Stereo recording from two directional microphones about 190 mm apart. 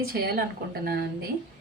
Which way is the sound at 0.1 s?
50° right (ahead or behind).